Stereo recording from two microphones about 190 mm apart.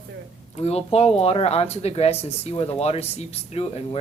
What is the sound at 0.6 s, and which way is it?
Speech, 35° left (ahead or behind).